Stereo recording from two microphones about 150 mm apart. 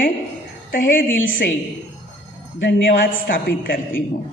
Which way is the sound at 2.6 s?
70° left (ahead or behind).